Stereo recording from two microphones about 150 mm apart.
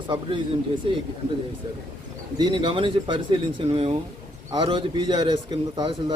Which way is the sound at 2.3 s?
30° right (ahead or behind).